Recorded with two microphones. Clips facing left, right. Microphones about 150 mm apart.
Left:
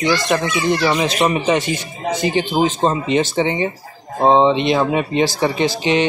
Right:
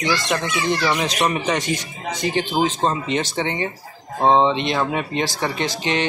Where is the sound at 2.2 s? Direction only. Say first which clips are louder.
Left 2 dB; 5° left (ahead or behind).